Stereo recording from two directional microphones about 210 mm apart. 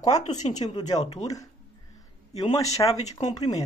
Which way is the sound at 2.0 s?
15° left (ahead or behind).